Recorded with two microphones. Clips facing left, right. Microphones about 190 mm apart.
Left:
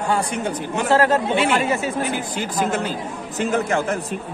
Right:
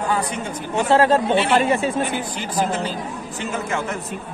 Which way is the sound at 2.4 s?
45° left (ahead or behind).